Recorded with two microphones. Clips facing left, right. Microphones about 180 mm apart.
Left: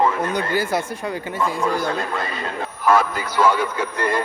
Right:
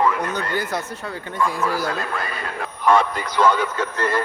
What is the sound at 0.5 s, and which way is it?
Speech, 10° left (ahead or behind).